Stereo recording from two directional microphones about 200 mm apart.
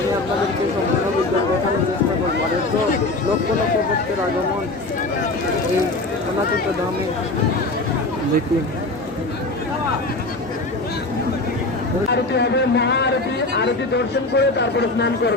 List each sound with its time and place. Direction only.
12.1 s speech: 55° left (ahead or behind)